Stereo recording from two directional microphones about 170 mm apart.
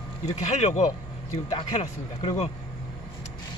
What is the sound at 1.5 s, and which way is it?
Speech, 30° left (ahead or behind).